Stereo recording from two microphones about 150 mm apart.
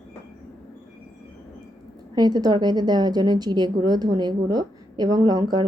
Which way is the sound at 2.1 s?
25° right (ahead or behind).